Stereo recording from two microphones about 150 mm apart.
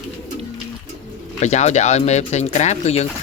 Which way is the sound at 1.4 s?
50° left (ahead or behind).